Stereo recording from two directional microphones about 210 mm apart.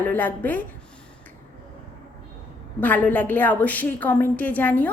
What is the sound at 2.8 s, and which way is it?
A woman's voice, 10° left (ahead or behind).